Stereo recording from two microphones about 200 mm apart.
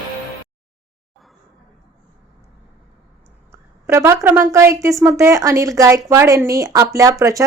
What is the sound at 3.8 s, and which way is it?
Speech, 15° right (ahead or behind).